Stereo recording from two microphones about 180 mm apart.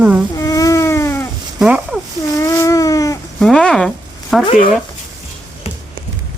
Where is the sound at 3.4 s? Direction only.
5° left (ahead or behind).